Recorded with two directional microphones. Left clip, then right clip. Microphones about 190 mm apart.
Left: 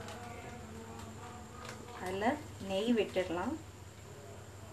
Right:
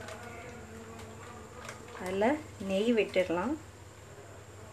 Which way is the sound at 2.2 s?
50° right (ahead or behind).